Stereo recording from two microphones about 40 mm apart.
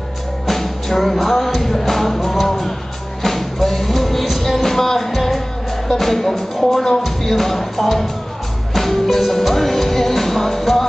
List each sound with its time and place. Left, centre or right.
0.5 s music: centre